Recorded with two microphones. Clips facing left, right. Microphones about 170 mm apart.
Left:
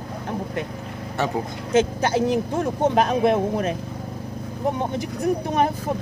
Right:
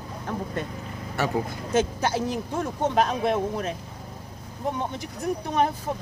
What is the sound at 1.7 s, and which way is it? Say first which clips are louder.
Speech: left 4 dB; 20° left (ahead or behind).